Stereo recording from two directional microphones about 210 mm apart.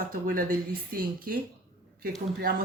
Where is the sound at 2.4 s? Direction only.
45° right (ahead or behind).